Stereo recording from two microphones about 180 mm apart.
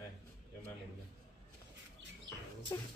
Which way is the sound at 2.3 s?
75° right (ahead or behind).